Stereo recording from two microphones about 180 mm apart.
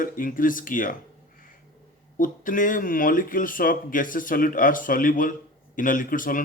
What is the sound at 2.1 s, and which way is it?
Speech, 50° left (ahead or behind).